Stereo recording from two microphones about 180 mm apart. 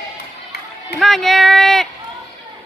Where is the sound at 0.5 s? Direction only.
65° left (ahead or behind).